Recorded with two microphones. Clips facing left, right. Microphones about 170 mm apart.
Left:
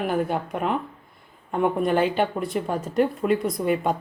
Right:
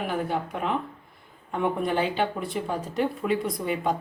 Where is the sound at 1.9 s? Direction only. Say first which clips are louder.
Left 4 dB; 50° left (ahead or behind).